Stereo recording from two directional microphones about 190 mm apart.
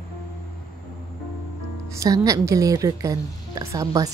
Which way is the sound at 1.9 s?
15° right (ahead or behind).